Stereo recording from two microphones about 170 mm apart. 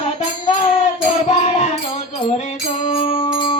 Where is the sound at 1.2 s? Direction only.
45° left (ahead or behind).